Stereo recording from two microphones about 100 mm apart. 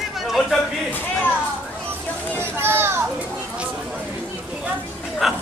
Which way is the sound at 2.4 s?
25° right (ahead or behind).